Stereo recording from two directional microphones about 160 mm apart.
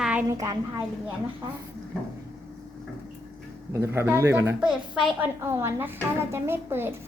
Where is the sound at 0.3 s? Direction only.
20° right (ahead or behind).